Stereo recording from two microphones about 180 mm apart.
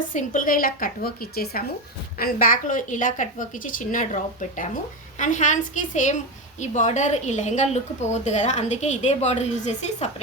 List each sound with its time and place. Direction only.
0.0 s a woman's voice: 45° left (ahead or behind)